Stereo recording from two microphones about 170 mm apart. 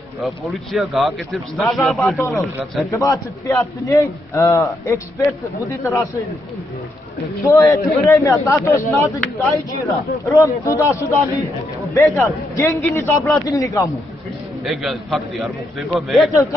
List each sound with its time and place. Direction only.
0.2 s speech: centre (ahead or behind)
2.1 s a man's voice: 15° left (ahead or behind)
7.4 s a man's voice: 20° left (ahead or behind)
11.9 s a man's voice: 15° left (ahead or behind)
14.6 s speech: centre (ahead or behind)